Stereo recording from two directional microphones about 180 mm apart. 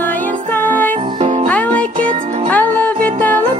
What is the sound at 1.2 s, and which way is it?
Music, 35° right (ahead or behind).